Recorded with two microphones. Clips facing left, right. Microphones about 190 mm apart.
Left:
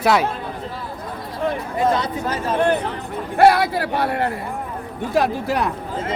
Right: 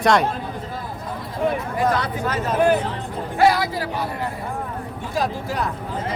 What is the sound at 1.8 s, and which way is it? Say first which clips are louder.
Speech: left 2 dB; 25° left (ahead or behind).